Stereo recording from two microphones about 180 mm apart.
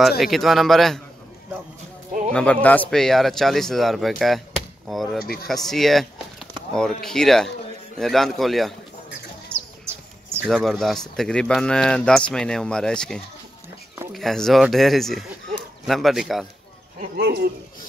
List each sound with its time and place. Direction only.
0.2 s speech: centre (ahead or behind)
2.3 s speech: 5° left (ahead or behind)
5.2 s speech: 60° left (ahead or behind)
5.5 s speech: centre (ahead or behind)
9.5 s bird: 15° right (ahead or behind)
10.5 s speech: centre (ahead or behind)
17.0 s speech: 60° right (ahead or behind)